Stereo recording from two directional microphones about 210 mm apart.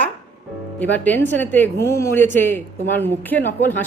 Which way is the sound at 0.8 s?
10° left (ahead or behind).